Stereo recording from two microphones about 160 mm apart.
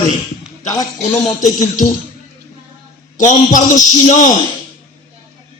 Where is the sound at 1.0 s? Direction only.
50° left (ahead or behind).